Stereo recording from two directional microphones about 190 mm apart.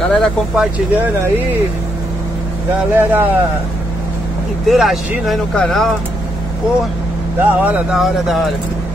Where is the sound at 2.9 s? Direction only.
10° right (ahead or behind).